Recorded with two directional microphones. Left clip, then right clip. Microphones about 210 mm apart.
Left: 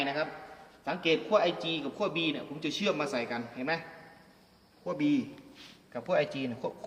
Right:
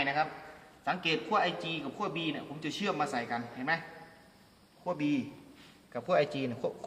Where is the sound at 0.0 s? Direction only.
25° right (ahead or behind).